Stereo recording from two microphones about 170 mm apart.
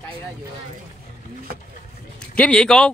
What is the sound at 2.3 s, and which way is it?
Speech, 5° left (ahead or behind).